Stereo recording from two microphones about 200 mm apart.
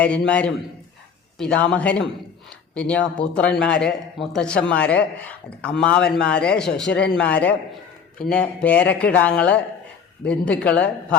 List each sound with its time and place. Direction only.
0.0 s a man's voice: 5° left (ahead or behind)